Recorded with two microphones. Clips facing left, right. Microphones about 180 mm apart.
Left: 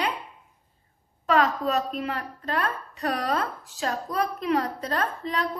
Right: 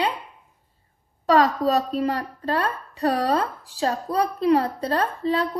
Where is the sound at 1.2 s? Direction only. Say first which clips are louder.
Right 4 dB; 35° right (ahead or behind).